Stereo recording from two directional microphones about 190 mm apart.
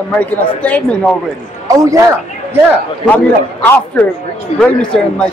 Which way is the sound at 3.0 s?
10° left (ahead or behind).